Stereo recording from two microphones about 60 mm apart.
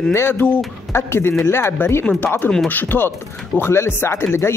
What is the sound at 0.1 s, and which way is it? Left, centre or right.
Speech, left.